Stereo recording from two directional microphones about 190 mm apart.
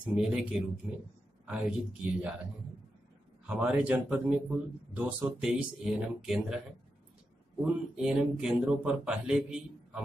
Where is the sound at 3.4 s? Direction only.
5° right (ahead or behind).